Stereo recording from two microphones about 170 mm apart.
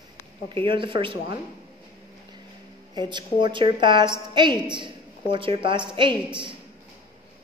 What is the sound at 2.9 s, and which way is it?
A woman's voice, 25° right (ahead or behind).